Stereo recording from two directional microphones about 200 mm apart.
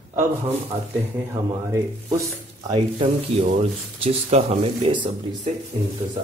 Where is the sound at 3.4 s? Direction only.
35° right (ahead or behind).